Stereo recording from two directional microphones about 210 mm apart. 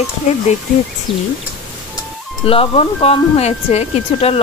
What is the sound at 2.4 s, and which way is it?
Speech, 25° left (ahead or behind).